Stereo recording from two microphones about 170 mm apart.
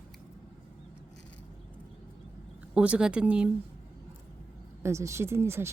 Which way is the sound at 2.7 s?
5° right (ahead or behind).